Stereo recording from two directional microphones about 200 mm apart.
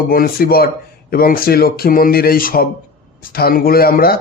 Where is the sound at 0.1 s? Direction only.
50° left (ahead or behind).